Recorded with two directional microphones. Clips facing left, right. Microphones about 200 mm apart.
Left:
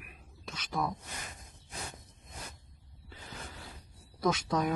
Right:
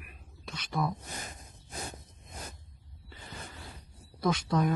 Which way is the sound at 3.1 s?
5° left (ahead or behind).